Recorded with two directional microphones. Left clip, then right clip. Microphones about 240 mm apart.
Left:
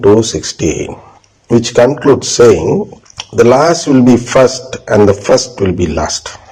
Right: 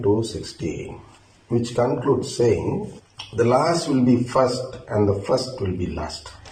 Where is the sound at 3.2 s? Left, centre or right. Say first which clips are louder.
Left 12 dB; left.